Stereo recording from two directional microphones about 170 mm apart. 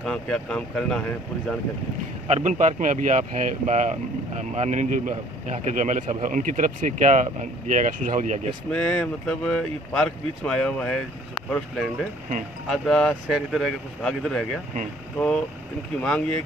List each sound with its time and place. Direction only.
0.0 s speech: 5° left (ahead or behind)
2.2 s speech: 45° right (ahead or behind)
8.6 s speech: 5° left (ahead or behind)